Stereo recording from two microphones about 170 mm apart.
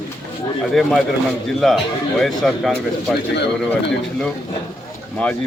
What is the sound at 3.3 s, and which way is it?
Speech, 85° left.